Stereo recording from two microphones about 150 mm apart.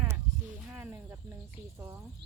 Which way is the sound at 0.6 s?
15° right (ahead or behind).